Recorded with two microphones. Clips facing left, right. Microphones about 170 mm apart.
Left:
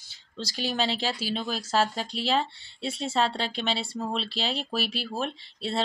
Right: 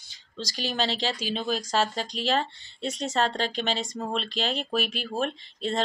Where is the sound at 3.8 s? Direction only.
45° right (ahead or behind).